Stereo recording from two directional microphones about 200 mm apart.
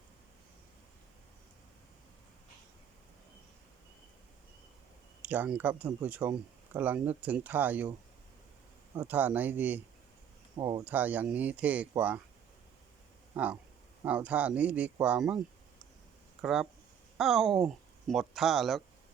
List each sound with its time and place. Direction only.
5.2 s speech: 10° right (ahead or behind)
9.0 s speech: 10° right (ahead or behind)
10.6 s speech: 20° right (ahead or behind)
10.8 s speech: 10° right (ahead or behind)
13.3 s speech: 5° right (ahead or behind)
16.4 s speech: centre (ahead or behind)